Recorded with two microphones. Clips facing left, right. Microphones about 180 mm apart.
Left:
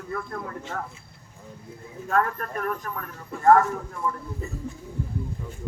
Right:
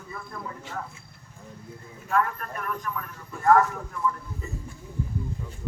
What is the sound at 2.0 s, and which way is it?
Speech, 45° left (ahead or behind).